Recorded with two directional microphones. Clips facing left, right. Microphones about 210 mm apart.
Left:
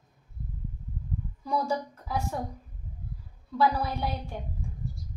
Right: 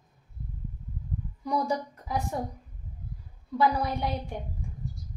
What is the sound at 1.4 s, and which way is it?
Speech, 15° right (ahead or behind).